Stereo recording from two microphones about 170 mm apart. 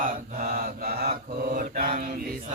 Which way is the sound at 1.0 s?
50° right (ahead or behind).